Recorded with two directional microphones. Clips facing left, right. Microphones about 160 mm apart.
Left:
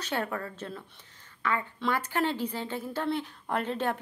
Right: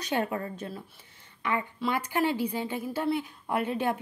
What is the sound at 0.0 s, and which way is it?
A woman's voice, 15° right (ahead or behind).